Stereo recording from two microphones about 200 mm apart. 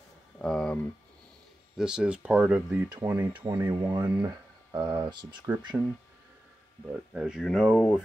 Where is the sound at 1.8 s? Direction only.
5° right (ahead or behind).